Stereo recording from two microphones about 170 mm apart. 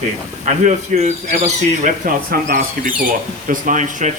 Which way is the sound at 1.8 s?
55° right (ahead or behind).